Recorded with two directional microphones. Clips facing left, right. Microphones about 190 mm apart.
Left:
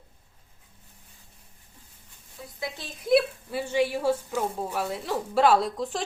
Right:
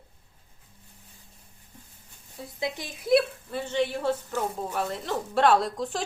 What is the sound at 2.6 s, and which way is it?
Speech, 15° right (ahead or behind).